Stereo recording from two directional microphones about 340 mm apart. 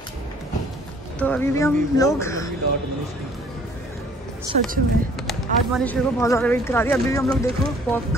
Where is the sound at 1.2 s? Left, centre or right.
Centre.